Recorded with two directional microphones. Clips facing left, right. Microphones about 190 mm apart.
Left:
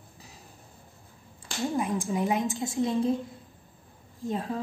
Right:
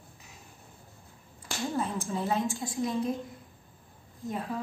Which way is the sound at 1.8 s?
15° left (ahead or behind).